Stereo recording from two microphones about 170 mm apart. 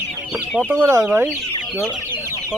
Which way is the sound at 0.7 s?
15° right (ahead or behind).